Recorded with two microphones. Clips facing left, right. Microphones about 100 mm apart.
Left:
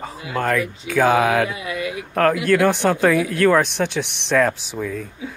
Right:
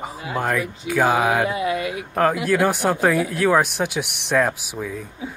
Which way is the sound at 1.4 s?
35° right (ahead or behind).